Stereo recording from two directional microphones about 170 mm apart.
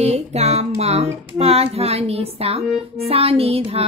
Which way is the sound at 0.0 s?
40° right (ahead or behind).